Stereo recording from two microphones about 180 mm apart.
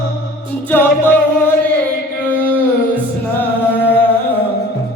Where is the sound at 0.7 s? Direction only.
10° left (ahead or behind).